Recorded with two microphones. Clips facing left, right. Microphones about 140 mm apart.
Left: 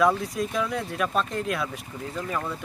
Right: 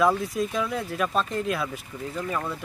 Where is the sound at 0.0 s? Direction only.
Centre (ahead or behind).